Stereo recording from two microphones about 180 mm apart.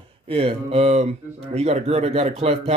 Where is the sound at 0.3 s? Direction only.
30° right (ahead or behind).